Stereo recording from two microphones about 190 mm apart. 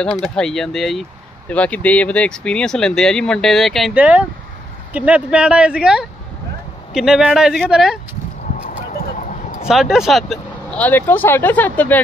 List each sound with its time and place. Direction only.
0.2 s speech: centre (ahead or behind)
8.6 s a sound: 45° left (ahead or behind)
9.7 s speech: centre (ahead or behind)